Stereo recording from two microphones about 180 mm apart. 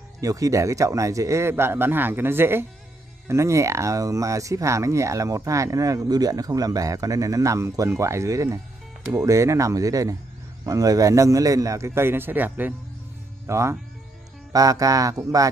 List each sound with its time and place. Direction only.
0.2 s speech: 20° right (ahead or behind)